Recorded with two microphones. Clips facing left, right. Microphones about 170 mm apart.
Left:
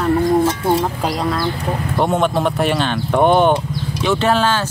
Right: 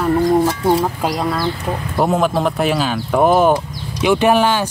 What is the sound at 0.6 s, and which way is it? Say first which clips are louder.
Speech: right 1 dB; 5° right (ahead or behind).